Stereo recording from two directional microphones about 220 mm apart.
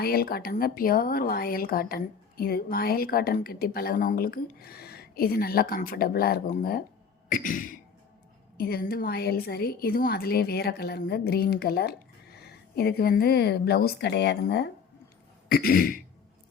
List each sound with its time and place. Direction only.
0.0 s speech: 45° left (ahead or behind)
7.3 s a sound: 35° left (ahead or behind)
8.5 s speech: 45° left (ahead or behind)
15.4 s throat clearing: 40° left (ahead or behind)